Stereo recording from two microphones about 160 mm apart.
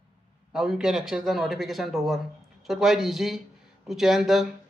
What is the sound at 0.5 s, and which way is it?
A man's voice, centre (ahead or behind).